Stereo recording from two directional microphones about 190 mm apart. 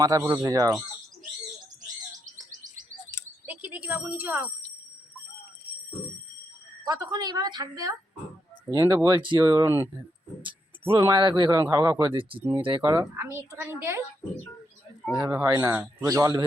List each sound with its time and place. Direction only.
0.0 s a woman's voice: 15° right (ahead or behind)
3.4 s smoke detector: 10° right (ahead or behind)
6.8 s speech: 20° right (ahead or behind)
12.4 s a woman's voice: 15° right (ahead or behind)
15.4 s a woman's voice: 15° right (ahead or behind)